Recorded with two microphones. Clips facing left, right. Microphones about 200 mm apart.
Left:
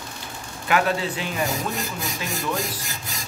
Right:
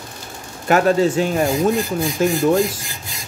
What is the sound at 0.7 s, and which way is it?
Speech, 45° right (ahead or behind).